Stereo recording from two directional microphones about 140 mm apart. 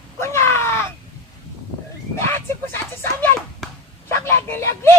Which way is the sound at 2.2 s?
15° left (ahead or behind).